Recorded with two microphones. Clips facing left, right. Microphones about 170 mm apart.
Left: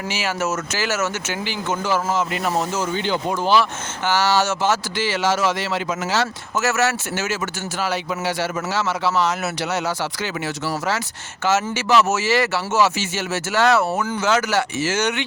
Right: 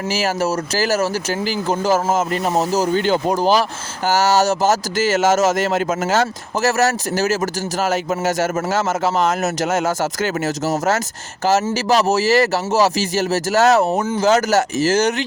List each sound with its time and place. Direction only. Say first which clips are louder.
0.1 s a man's voice: right 5 dB; 40° right (ahead or behind)
2.4 s a man's voice: right 4 dB; 35° right (ahead or behind)
13.8 s speech: right 4 dB; 20° right (ahead or behind)
14.2 s a man's voice: right 5 dB; 40° right (ahead or behind)